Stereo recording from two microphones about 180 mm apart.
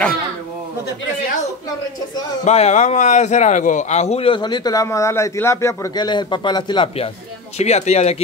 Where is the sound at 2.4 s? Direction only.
40° left (ahead or behind).